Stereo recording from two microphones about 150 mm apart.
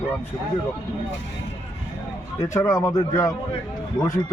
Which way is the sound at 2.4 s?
20° left (ahead or behind).